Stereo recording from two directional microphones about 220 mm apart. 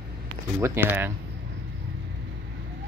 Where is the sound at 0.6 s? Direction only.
10° right (ahead or behind).